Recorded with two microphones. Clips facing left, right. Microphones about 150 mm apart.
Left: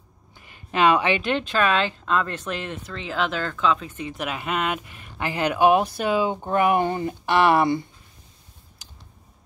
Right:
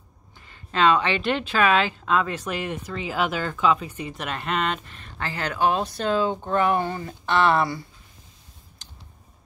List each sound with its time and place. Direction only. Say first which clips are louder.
0.5 s a woman's voice: left 1 dB; 15° left (ahead or behind)
1.2 s speech: even; 5° right (ahead or behind); by 7.8 s 20° left (ahead or behind)